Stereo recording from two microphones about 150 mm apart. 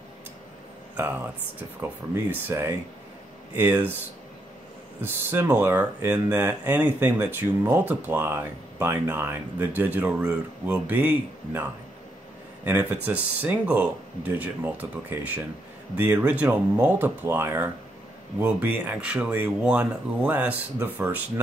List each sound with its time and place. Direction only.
0.9 s speech: 10° right (ahead or behind)
5.0 s speech: 15° right (ahead or behind)